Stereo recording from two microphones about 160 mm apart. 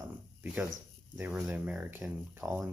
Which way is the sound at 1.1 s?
5° right (ahead or behind).